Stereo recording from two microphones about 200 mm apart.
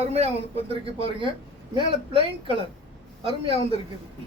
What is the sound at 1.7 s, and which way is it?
Speech, 25° right (ahead or behind).